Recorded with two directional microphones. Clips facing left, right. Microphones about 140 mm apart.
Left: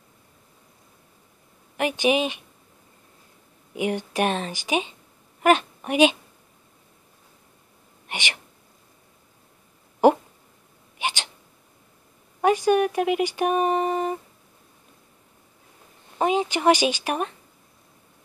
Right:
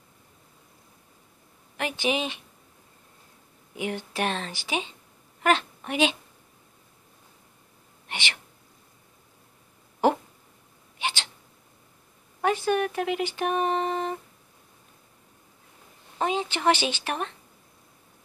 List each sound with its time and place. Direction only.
1.8 s speech: 15° left (ahead or behind)
3.7 s speech: 15° left (ahead or behind)
8.1 s speech: 15° left (ahead or behind)
10.0 s a sound: 15° left (ahead or behind)
11.0 s hiccup: 15° left (ahead or behind)
12.4 s speech: 15° left (ahead or behind)
16.2 s speech: 15° left (ahead or behind)